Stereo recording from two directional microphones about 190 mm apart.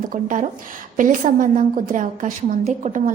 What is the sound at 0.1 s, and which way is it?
A woman's voice, 45° right (ahead or behind).